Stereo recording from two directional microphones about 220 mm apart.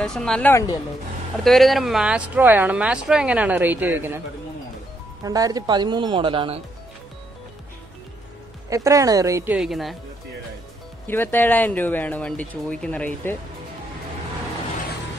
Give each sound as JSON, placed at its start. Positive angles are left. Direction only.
{"t": 0.0, "sound": "speech", "side_deg": 0}
{"t": 1.4, "sound": "speech", "side_deg": 0}
{"t": 5.2, "sound": "speech", "side_deg": -15}
{"t": 8.6, "sound": "a woman's voice", "side_deg": -15}
{"t": 11.1, "sound": "speech", "side_deg": 10}